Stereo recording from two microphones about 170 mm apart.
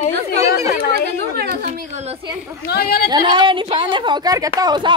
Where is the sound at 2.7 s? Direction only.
65° left (ahead or behind).